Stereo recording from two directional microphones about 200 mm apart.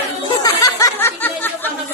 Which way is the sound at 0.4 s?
15° left (ahead or behind).